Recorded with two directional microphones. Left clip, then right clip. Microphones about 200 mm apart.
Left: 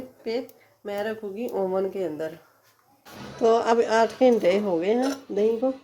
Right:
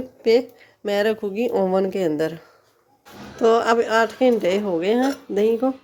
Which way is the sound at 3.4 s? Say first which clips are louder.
Right 3 dB; 15° right (ahead or behind).